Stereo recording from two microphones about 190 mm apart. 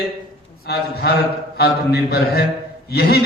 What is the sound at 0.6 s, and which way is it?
A man's voice, 55° left (ahead or behind).